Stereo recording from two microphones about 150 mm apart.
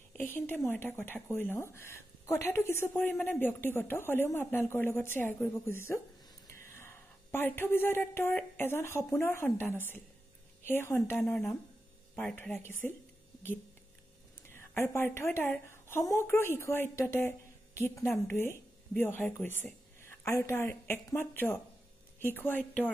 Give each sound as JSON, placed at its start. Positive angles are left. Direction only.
{"t": 0.2, "sound": "a woman's voice", "side_deg": 10}
{"t": 12.2, "sound": "speech", "side_deg": 10}
{"t": 14.5, "sound": "speech", "side_deg": 15}